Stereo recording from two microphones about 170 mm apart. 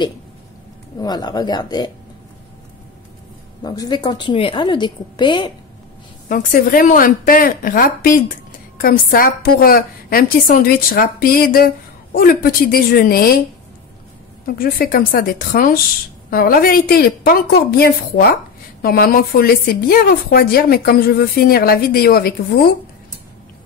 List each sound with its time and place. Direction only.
0.9 s a woman's voice: 25° left (ahead or behind)
3.6 s a woman's voice: 25° left (ahead or behind)
6.2 s a woman's voice: 55° left (ahead or behind)
14.6 s a woman's voice: 55° left (ahead or behind)